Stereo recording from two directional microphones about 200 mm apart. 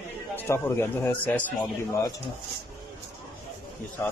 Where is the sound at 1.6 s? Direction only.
20° left (ahead or behind).